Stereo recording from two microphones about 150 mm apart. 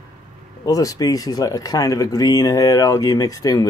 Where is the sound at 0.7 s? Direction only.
20° left (ahead or behind).